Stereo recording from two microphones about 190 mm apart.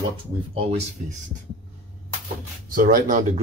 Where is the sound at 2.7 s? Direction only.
45° right (ahead or behind).